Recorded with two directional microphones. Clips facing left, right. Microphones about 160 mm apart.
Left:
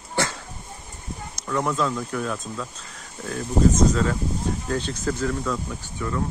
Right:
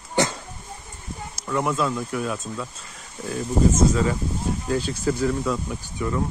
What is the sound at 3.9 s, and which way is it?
Speech, 10° right (ahead or behind).